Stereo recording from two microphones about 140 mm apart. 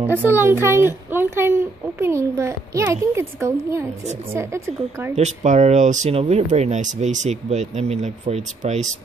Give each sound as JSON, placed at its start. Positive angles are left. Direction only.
{"t": 0.0, "sound": "a woman's voice", "side_deg": -15}
{"t": 5.1, "sound": "speech", "side_deg": -55}